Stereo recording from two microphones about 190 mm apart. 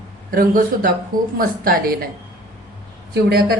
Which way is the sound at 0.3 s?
50° right (ahead or behind).